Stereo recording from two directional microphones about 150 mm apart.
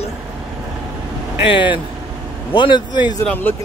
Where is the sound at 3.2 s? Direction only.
10° left (ahead or behind).